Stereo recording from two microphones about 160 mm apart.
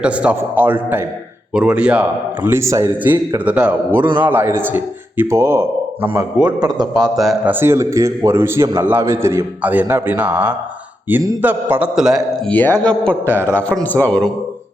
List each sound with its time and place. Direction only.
0.0 s a man's voice: 10° right (ahead or behind); by 7.1 s 25° right (ahead or behind)
7.2 s speech: centre (ahead or behind)
7.5 s a man's voice: 15° right (ahead or behind)
12.5 s a man's voice: 10° left (ahead or behind)